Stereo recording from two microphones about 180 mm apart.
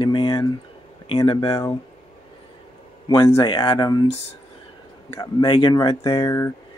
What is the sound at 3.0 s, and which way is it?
Speech, 20° left (ahead or behind).